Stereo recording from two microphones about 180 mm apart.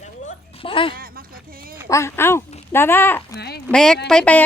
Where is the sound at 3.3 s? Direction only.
65° left (ahead or behind).